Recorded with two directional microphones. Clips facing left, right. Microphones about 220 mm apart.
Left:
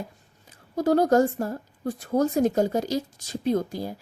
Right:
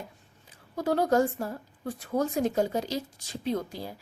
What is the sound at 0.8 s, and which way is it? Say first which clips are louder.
A woman's voice: left 5 dB; 40° left (ahead or behind).